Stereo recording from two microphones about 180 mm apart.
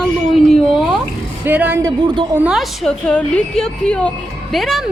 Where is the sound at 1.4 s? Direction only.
10° right (ahead or behind).